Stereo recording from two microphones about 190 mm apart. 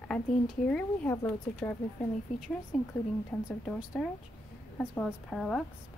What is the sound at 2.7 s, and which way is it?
Speech, centre (ahead or behind).